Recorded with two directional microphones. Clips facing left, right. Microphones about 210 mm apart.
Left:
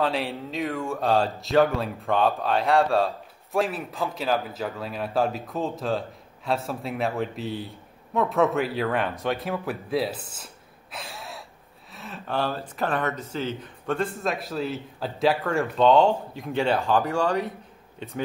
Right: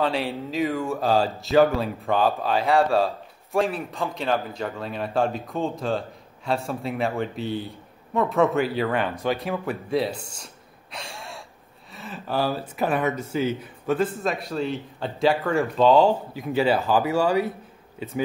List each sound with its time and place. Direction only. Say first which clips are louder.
0.0 s speech: right 1 dB; centre (ahead or behind)